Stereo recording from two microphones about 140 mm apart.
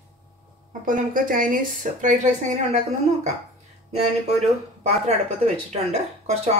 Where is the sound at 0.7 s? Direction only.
70° right (ahead or behind).